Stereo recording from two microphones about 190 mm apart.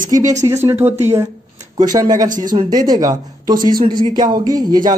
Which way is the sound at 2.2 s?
45° right (ahead or behind).